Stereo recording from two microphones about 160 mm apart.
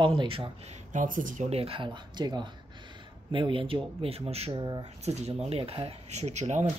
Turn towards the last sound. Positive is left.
turn(degrees=-45)  # may be behind; listen again after turning